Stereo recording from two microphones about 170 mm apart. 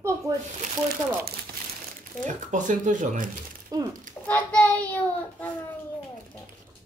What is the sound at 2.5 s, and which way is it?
Speech, 50° right (ahead or behind).